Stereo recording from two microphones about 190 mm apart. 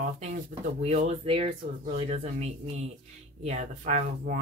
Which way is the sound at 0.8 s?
35° right (ahead or behind).